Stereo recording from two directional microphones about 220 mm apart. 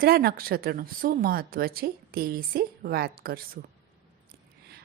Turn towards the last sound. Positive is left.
turn(degrees=-40)  # may be behind; listen again after turning